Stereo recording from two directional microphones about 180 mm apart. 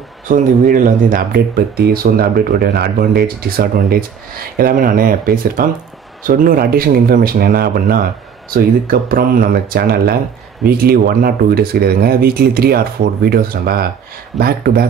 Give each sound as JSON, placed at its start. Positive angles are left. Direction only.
{"t": 0.3, "sound": "speech", "side_deg": -50}